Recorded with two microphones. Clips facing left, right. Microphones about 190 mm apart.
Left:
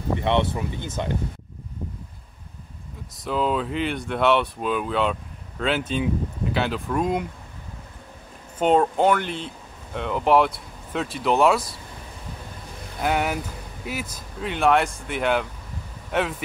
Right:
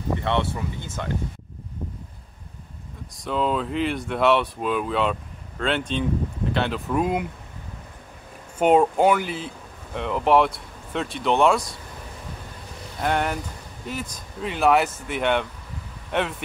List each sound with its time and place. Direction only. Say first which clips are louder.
0.2 s speech: left 2 dB; 20° left (ahead or behind)
3.2 s speech: even; centre (ahead or behind)
8.5 s speech: right 2 dB; 10° right (ahead or behind)
13.0 s speech: even; 5° left (ahead or behind)